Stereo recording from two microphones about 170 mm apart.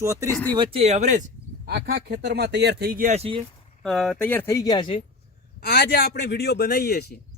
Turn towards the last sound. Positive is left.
turn(degrees=70)  # may be behind; listen again after turning